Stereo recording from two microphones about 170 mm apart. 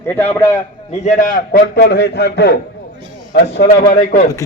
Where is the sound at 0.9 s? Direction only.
40° left (ahead or behind).